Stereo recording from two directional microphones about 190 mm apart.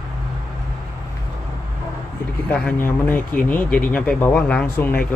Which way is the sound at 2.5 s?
10° left (ahead or behind).